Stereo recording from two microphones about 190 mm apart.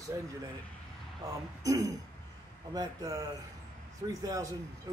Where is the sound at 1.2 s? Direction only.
15° right (ahead or behind).